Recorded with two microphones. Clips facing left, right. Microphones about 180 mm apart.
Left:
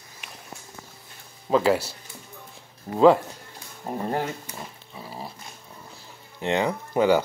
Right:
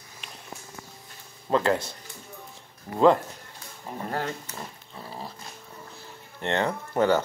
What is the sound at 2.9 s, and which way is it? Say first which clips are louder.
Speech: left 3 dB; 25° left (ahead or behind).